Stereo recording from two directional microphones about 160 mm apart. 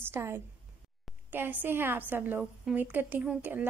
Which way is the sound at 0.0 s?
15° right (ahead or behind).